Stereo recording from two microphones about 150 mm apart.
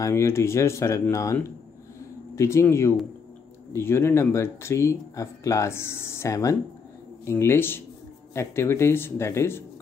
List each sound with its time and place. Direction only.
0.0 s speech: 20° left (ahead or behind)